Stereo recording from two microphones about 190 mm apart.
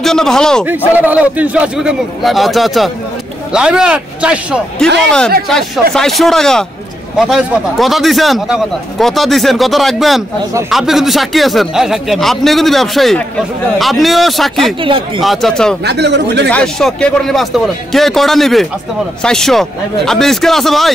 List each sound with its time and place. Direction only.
0.0 s speech: 5° left (ahead or behind)
0.9 s speech: 10° right (ahead or behind)
5.9 s speech: centre (ahead or behind)
14.8 s speech: 25° right (ahead or behind)
15.1 s speech: centre (ahead or behind)
15.8 s speech: 65° right (ahead or behind)
16.4 s speech: 5° left (ahead or behind)